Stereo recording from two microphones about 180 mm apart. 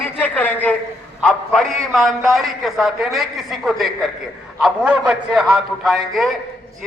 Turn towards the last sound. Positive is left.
turn(degrees=0)  # may be behind; listen again after turning